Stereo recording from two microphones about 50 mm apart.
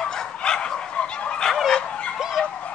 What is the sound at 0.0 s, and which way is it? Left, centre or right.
Fowl, centre.